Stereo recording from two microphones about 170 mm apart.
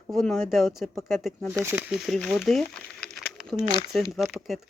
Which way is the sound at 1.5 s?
10° right (ahead or behind).